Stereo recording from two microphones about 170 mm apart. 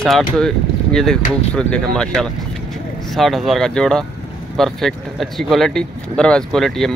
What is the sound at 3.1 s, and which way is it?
A man's voice, centre (ahead or behind).